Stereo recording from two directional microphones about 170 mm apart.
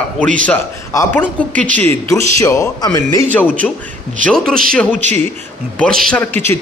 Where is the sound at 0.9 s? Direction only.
10° left (ahead or behind).